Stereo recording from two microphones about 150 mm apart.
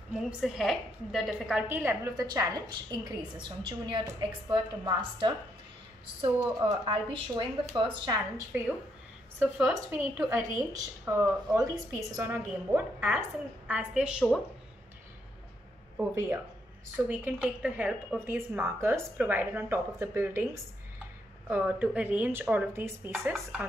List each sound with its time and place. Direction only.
0.1 s a woman's voice: centre (ahead or behind)
1.7 s a woman's voice: 15° right (ahead or behind)
6.4 s speech: 30° right (ahead or behind)
8.5 s a woman's voice: 10° right (ahead or behind)
16.0 s a woman's voice: 15° right (ahead or behind)